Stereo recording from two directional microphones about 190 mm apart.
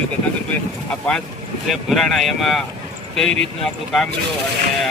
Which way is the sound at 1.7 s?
Centre (ahead or behind).